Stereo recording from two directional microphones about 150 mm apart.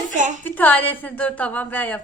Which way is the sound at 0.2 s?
55° right (ahead or behind).